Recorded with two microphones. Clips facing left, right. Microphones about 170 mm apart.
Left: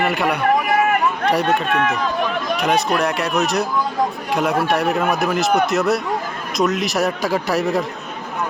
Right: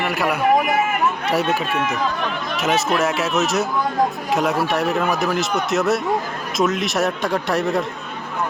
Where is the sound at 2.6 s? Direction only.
Centre (ahead or behind).